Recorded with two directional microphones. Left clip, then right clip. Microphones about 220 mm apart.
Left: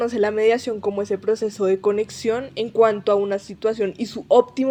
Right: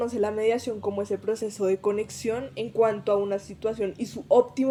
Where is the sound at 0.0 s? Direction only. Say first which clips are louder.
Left 6 dB; 15° left (ahead or behind).